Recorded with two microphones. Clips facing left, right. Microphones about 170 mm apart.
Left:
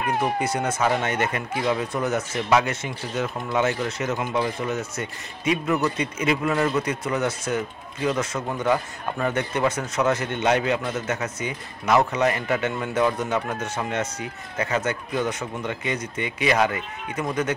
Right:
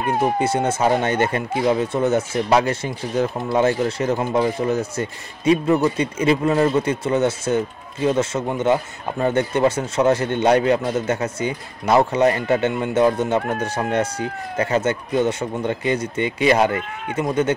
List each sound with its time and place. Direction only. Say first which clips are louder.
0.0 s a man's voice: right 4 dB; 30° right (ahead or behind)